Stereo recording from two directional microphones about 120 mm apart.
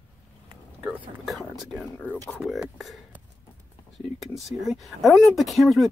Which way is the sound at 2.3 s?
Centre (ahead or behind).